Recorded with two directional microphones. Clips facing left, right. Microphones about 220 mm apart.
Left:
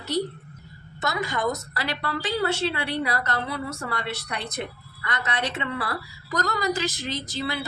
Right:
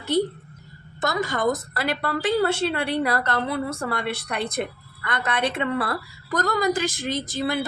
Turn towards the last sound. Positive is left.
turn(degrees=-50)  # may be behind; listen again after turning